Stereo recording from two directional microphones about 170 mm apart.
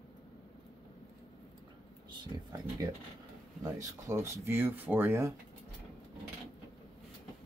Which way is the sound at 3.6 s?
20° right (ahead or behind).